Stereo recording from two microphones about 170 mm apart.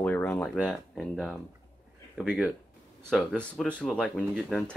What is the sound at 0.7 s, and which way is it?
Speech, 5° right (ahead or behind).